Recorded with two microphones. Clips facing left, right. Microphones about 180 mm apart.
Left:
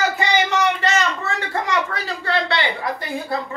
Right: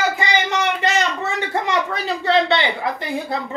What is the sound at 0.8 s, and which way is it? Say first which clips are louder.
Speech: right 1 dB; 15° right (ahead or behind).